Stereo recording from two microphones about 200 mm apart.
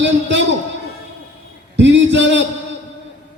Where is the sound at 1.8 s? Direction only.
65° right (ahead or behind).